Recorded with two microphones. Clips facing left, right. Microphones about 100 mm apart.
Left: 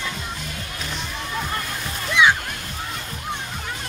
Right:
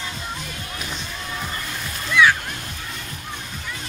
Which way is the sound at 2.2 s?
20° left (ahead or behind).